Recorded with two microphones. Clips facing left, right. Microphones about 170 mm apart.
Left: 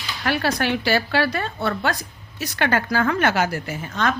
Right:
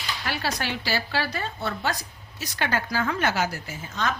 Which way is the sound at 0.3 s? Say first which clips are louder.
Left 8 dB; 60° left (ahead or behind).